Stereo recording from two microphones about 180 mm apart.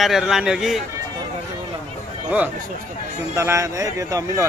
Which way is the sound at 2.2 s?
10° right (ahead or behind).